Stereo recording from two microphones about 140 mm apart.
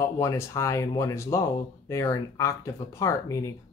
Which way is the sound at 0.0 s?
20° left (ahead or behind).